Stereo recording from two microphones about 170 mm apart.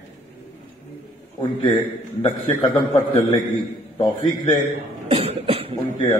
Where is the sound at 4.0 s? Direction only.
30° left (ahead or behind).